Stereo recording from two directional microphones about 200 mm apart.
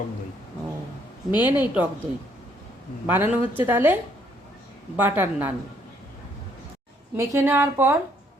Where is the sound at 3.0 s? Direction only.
10° right (ahead or behind).